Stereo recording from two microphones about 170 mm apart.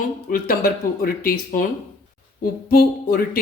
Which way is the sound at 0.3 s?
55° left (ahead or behind).